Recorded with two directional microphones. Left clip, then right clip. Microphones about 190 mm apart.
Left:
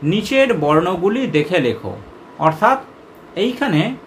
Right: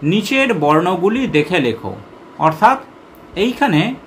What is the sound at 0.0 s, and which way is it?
Speech, 10° right (ahead or behind).